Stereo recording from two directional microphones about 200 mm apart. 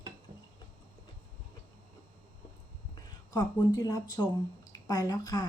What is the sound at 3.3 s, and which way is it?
A woman's voice, 20° left (ahead or behind).